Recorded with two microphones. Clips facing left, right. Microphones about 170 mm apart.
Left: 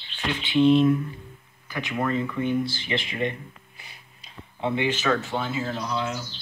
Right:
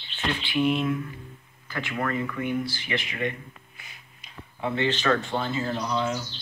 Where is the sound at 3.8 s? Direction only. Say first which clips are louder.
Left 1 dB; 30° left (ahead or behind).